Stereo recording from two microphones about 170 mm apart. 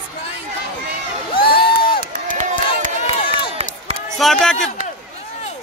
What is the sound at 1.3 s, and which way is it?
Crowd, 60° left (ahead or behind).